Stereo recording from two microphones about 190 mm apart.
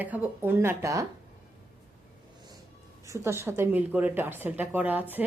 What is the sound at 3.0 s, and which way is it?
A woman's voice, 15° right (ahead or behind).